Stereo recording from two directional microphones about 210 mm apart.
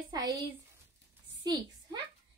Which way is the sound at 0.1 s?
20° right (ahead or behind).